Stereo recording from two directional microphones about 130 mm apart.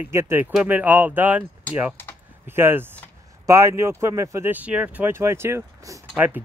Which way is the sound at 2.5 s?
15° right (ahead or behind).